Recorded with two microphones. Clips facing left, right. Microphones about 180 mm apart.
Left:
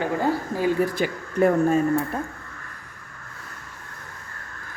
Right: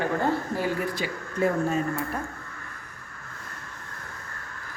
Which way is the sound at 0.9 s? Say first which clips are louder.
Left 6 dB; 60° left (ahead or behind).